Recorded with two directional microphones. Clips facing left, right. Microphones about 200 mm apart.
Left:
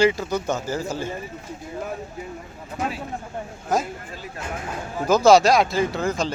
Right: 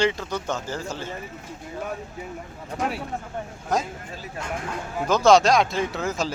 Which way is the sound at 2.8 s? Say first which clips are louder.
Even; 5° left (ahead or behind).